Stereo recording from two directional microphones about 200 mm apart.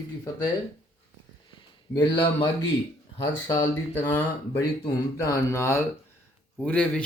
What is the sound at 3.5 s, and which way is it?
Speech, 15° left (ahead or behind).